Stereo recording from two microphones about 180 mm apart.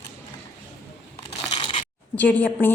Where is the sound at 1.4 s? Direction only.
25° left (ahead or behind).